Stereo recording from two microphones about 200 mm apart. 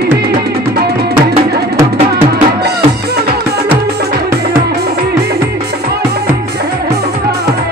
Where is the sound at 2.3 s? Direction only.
55° right (ahead or behind).